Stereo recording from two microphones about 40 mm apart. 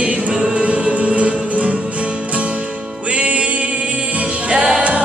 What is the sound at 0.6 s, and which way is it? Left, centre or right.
Music, right.